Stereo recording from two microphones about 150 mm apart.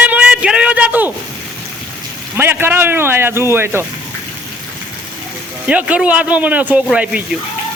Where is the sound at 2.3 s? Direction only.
15° right (ahead or behind).